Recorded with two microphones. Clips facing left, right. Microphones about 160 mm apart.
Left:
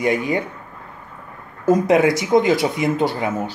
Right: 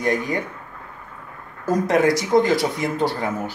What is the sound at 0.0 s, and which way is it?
Speech, 10° left (ahead or behind).